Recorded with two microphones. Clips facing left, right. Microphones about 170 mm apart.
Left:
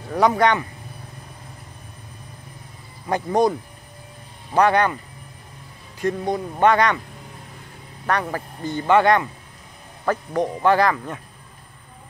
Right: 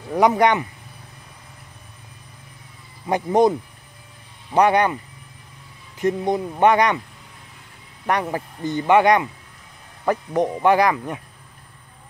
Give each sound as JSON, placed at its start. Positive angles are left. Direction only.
{"t": 0.1, "sound": "speech", "side_deg": -20}
{"t": 3.1, "sound": "speech", "side_deg": -20}
{"t": 4.6, "sound": "speech", "side_deg": -15}
{"t": 5.9, "sound": "speech", "side_deg": -20}
{"t": 8.1, "sound": "speech", "side_deg": -20}